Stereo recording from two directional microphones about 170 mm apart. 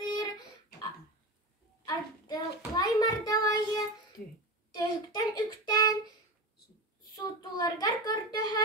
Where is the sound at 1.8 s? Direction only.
25° left (ahead or behind).